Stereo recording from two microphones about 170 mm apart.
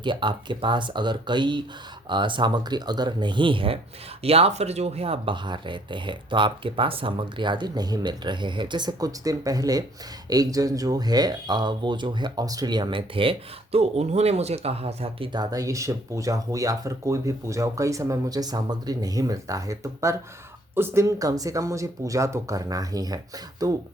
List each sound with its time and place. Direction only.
0.0 s speech: 30° right (ahead or behind)